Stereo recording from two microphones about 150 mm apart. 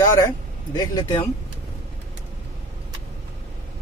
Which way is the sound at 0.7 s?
25° left (ahead or behind).